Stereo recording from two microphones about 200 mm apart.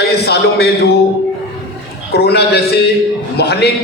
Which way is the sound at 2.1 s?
55° left (ahead or behind).